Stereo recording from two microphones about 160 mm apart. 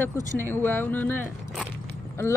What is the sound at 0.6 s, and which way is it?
Speech, 10° left (ahead or behind).